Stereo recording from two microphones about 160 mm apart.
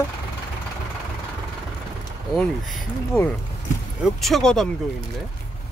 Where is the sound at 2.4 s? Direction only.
Centre (ahead or behind).